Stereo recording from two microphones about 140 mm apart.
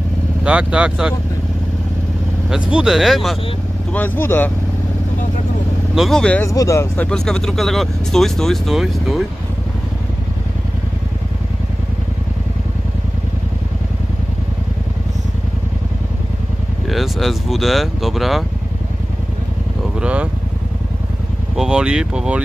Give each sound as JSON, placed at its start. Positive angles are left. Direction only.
{"t": 0.4, "sound": "speech", "side_deg": -10}
{"t": 2.5, "sound": "speech", "side_deg": -5}
{"t": 3.9, "sound": "speech", "side_deg": 10}
{"t": 5.9, "sound": "speech", "side_deg": 5}
{"t": 6.4, "sound": "speech", "side_deg": 25}
{"t": 7.1, "sound": "speech", "side_deg": 5}
{"t": 16.8, "sound": "speech", "side_deg": 0}
{"t": 20.0, "sound": "vehicle", "side_deg": -10}
{"t": 21.5, "sound": "speech", "side_deg": -5}